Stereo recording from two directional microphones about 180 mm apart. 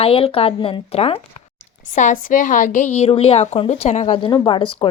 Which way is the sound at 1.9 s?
45° left (ahead or behind).